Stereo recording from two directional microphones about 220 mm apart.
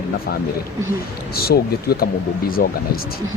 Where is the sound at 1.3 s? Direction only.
45° left (ahead or behind).